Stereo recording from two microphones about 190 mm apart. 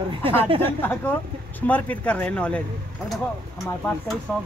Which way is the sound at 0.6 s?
10° left (ahead or behind).